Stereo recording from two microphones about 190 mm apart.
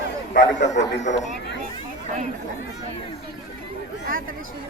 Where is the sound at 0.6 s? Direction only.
40° left (ahead or behind).